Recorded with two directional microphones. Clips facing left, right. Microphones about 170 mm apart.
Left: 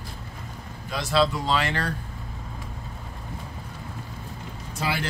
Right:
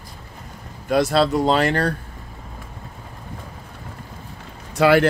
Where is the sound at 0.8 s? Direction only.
55° right (ahead or behind).